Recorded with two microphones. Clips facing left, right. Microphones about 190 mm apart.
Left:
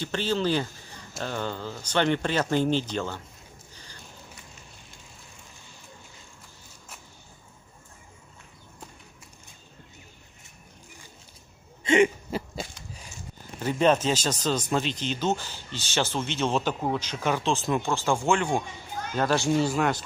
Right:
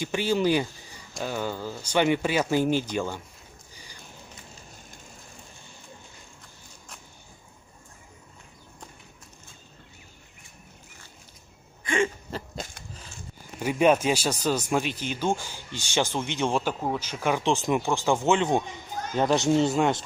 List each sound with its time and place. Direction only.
0.0 s speech: 10° right (ahead or behind)
11.8 s throat clearing: 20° left (ahead or behind)
12.3 s a sound: 10° left (ahead or behind)
13.6 s speech: 10° right (ahead or behind)